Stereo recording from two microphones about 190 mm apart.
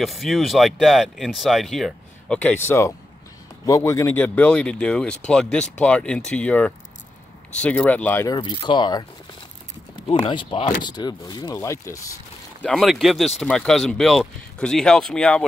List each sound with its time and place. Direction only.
0.0 s speech: centre (ahead or behind)
8.4 s speech: 25° left (ahead or behind)
10.0 s speech: 30° left (ahead or behind)
12.6 s speech: centre (ahead or behind)